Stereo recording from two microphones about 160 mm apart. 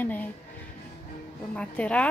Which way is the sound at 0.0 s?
10° left (ahead or behind).